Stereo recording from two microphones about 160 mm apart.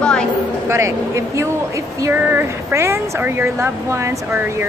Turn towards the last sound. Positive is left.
turn(degrees=-15)  # may be behind; listen again after turning